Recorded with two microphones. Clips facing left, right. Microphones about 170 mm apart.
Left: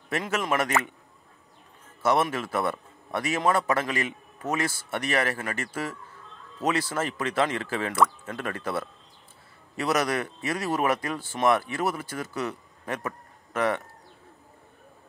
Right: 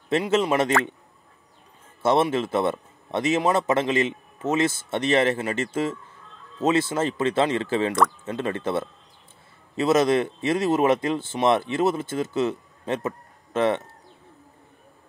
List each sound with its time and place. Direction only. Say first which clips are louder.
0.3 s speech: right 5 dB; 25° right (ahead or behind)
2.2 s speech: right 5 dB; 25° right (ahead or behind)